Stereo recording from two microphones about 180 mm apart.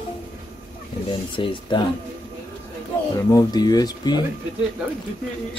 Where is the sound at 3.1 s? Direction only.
20° left (ahead or behind).